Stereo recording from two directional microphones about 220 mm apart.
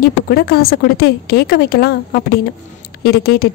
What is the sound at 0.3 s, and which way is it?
A woman's voice, 45° left (ahead or behind).